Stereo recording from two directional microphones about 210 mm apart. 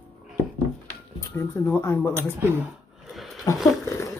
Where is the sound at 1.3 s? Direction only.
10° left (ahead or behind).